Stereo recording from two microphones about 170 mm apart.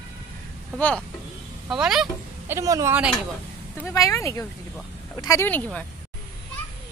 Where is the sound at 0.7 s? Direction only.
10° left (ahead or behind).